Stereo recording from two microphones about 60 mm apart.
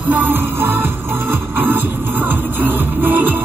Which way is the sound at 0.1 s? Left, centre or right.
Right.